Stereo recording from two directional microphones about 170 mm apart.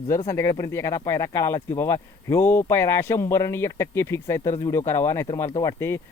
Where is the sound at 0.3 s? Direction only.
15° left (ahead or behind).